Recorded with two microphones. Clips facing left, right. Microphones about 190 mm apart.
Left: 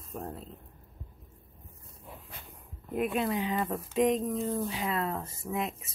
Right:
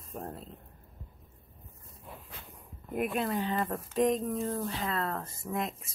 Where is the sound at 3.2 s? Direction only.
5° left (ahead or behind).